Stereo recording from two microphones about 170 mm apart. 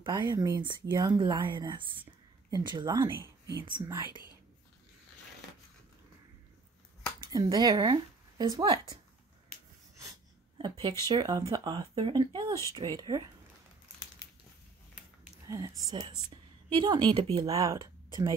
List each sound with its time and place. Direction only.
0.0 s speech: 25° right (ahead or behind)
7.2 s speech: 25° right (ahead or behind)
10.6 s speech: 25° right (ahead or behind)
15.4 s speech: 20° right (ahead or behind)